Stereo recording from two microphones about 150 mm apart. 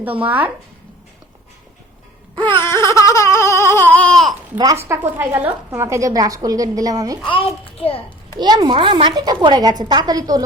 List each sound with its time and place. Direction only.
0.0 s speech: 10° right (ahead or behind)
2.6 s baby cry: 20° left (ahead or behind)
4.5 s speech: 25° right (ahead or behind)
7.3 s a child's voice: 35° left (ahead or behind)
8.4 s speech: 30° right (ahead or behind)